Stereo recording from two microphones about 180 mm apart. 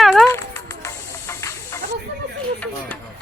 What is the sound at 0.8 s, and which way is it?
Hiss, 15° left (ahead or behind).